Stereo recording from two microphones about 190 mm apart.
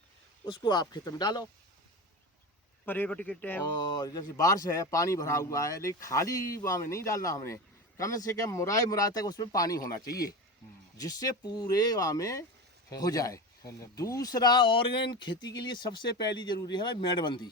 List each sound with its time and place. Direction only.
0.4 s speech: 25° left (ahead or behind)
2.8 s speech: 10° left (ahead or behind)
3.6 s speech: 20° left (ahead or behind)